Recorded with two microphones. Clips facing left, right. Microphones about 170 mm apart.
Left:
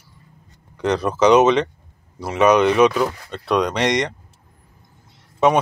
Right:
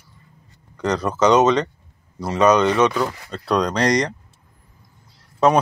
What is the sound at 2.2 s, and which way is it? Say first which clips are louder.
Speech: left 1 dB; 5° left (ahead or behind).